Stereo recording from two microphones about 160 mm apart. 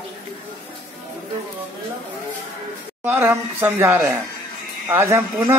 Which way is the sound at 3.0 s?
10° right (ahead or behind).